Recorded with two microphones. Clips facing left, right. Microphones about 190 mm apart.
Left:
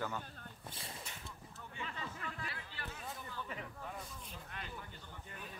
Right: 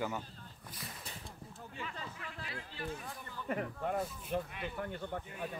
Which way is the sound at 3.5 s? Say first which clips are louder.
Right 11 dB; 55° right (ahead or behind).